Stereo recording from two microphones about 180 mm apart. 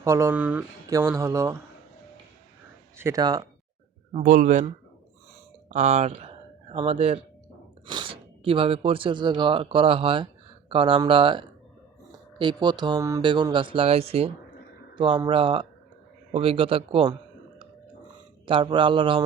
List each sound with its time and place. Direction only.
0.0 s speech: 15° right (ahead or behind)
3.0 s speech: 20° right (ahead or behind)
4.1 s speech: 45° right (ahead or behind)
5.6 s speech: 40° right (ahead or behind)